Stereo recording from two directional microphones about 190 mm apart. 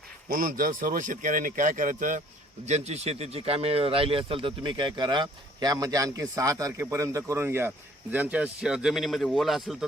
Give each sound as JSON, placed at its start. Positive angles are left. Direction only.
{"t": 0.3, "sound": "a man's voice", "side_deg": -45}